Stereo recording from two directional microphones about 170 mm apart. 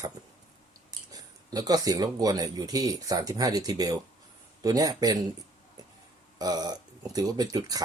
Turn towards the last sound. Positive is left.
turn(degrees=-20)  # may be behind; listen again after turning